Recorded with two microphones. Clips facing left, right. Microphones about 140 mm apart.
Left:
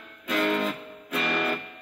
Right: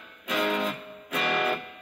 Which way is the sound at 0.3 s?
Centre (ahead or behind).